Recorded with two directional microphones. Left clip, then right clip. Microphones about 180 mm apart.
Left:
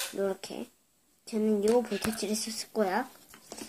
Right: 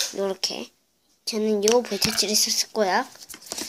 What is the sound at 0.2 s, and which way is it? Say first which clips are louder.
A woman's voice: right 6 dB; 5° right (ahead or behind).